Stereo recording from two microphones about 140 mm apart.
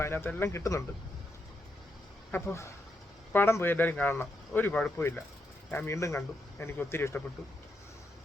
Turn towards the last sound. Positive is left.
turn(degrees=15)  # may be behind; listen again after turning